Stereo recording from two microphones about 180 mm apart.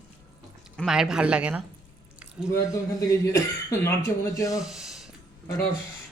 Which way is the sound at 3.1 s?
15° left (ahead or behind).